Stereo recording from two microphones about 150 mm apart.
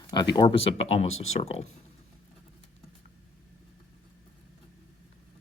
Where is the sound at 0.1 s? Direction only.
30° left (ahead or behind).